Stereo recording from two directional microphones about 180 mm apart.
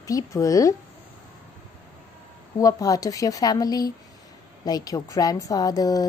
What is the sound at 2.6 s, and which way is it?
A woman's voice, 20° left (ahead or behind).